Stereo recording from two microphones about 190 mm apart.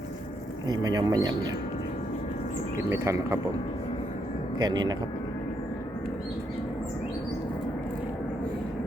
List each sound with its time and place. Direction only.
0.7 s speech: 20° right (ahead or behind)
2.9 s speech: 15° right (ahead or behind)
4.5 s speech: 20° right (ahead or behind)